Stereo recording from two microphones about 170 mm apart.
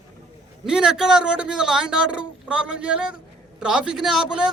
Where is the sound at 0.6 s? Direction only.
5° right (ahead or behind).